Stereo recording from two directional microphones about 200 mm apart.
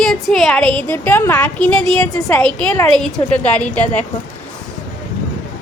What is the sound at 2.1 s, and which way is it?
Speech, 15° left (ahead or behind).